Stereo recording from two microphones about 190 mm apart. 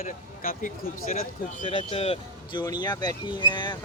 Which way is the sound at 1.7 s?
30° left (ahead or behind).